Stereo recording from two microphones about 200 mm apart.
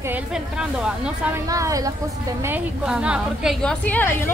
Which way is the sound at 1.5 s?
15° right (ahead or behind).